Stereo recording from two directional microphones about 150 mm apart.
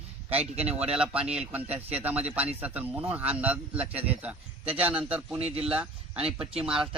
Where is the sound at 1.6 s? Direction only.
45° right (ahead or behind).